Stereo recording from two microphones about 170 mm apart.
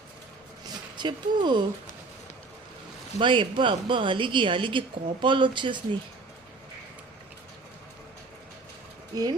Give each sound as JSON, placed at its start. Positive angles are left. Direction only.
{"t": 0.9, "sound": "a woman's voice", "side_deg": -25}
{"t": 3.2, "sound": "a woman's voice", "side_deg": -30}
{"t": 9.1, "sound": "a woman's voice", "side_deg": -20}